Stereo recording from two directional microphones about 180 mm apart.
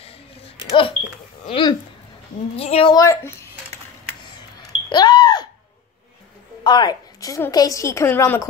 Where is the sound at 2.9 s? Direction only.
15° left (ahead or behind).